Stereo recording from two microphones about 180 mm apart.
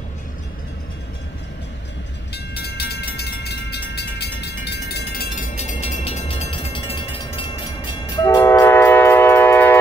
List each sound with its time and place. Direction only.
2.3 s train: 65° left (ahead or behind); by 9.8 s 10° left (ahead or behind)